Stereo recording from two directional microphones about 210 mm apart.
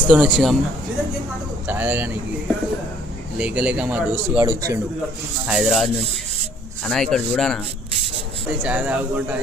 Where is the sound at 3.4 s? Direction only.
5° right (ahead or behind).